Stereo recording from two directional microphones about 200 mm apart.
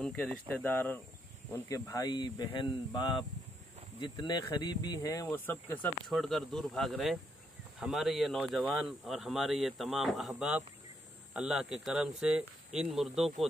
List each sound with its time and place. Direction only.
0.0 s speech: 5° left (ahead or behind)